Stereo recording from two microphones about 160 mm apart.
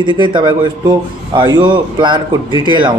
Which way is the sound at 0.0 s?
30° right (ahead or behind).